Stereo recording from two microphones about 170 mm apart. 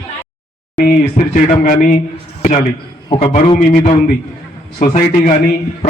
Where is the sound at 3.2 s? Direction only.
35° left (ahead or behind).